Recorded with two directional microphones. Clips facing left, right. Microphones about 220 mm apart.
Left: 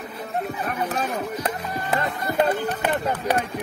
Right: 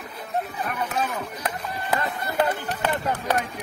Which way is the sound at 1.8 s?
20° left (ahead or behind).